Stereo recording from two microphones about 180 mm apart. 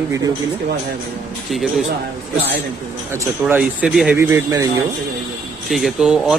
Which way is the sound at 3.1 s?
15° right (ahead or behind).